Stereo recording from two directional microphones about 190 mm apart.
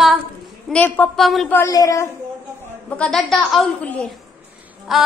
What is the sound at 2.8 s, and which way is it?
A woman's voice, 5° left (ahead or behind).